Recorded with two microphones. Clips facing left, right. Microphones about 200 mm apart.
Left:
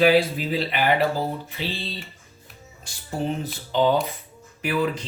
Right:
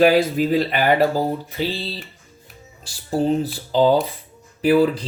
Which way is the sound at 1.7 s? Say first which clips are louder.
Right 4 dB; 35° right (ahead or behind).